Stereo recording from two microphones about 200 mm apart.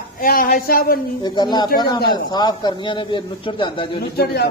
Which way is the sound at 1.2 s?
20° left (ahead or behind).